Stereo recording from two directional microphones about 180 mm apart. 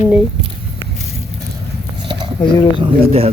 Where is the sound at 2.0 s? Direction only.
30° right (ahead or behind).